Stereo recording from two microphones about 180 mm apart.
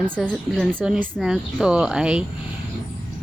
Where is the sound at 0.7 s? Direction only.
5° right (ahead or behind).